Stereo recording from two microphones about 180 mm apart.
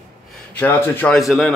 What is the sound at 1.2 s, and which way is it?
Speech, centre (ahead or behind).